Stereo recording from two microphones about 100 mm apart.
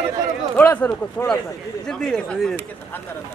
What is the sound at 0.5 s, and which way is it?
Speech, 15° left (ahead or behind).